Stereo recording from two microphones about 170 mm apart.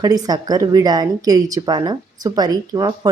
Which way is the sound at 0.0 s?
20° right (ahead or behind).